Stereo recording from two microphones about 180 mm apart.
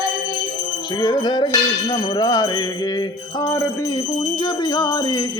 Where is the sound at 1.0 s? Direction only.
20° left (ahead or behind).